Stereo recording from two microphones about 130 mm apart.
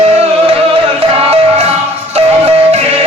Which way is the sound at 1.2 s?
50° right (ahead or behind).